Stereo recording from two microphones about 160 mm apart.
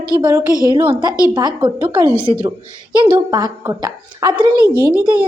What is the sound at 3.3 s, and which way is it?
A woman's voice, 25° right (ahead or behind).